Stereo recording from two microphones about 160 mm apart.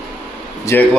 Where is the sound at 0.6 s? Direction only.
15° left (ahead or behind).